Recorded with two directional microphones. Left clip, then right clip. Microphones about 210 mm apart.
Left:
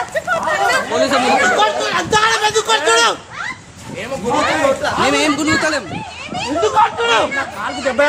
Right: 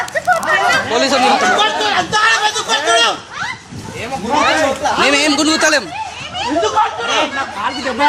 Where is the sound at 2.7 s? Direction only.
20° left (ahead or behind).